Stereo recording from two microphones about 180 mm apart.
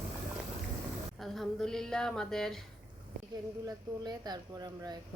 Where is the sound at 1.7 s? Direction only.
5° left (ahead or behind).